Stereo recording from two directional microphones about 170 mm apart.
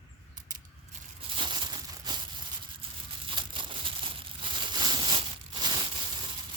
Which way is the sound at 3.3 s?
30° right (ahead or behind).